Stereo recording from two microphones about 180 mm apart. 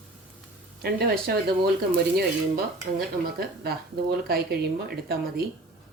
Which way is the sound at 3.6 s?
60° right (ahead or behind).